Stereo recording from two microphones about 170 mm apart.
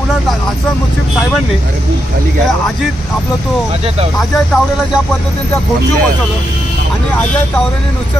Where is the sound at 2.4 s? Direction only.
Centre (ahead or behind).